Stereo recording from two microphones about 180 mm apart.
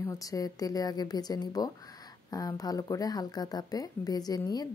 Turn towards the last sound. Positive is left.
turn(degrees=20)  # may be behind; listen again after turning